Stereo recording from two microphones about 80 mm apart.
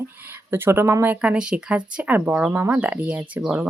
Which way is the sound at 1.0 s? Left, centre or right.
Centre.